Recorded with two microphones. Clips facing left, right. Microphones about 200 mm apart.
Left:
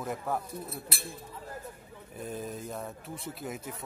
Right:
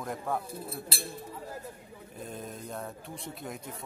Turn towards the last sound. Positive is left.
turn(degrees=5)  # may be behind; listen again after turning